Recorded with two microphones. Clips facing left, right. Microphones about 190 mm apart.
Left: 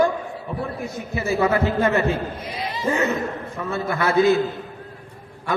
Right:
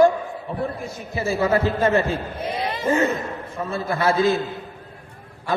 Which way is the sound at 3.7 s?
30° right (ahead or behind).